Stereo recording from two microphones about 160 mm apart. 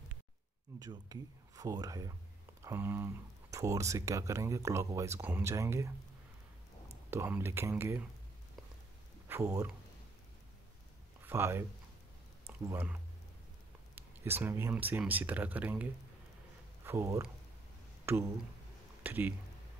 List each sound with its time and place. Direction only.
0.7 s speech: 25° right (ahead or behind)
7.1 s speech: 15° right (ahead or behind)
9.3 s speech: 15° right (ahead or behind)
11.2 s speech: 15° right (ahead or behind)